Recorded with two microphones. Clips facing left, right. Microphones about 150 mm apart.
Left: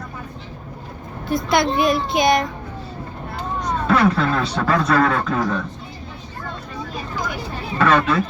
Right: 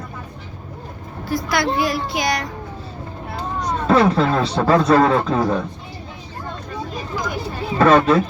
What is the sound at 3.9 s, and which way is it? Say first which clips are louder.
Speech: right 2 dB; 30° right (ahead or behind).